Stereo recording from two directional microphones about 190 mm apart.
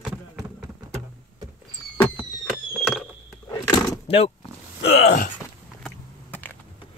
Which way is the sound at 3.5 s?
15° left (ahead or behind).